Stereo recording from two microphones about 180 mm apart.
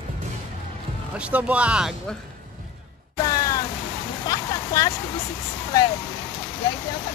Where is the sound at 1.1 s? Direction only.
5° right (ahead or behind).